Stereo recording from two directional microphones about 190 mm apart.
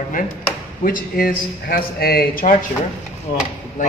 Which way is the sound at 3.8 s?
40° left (ahead or behind).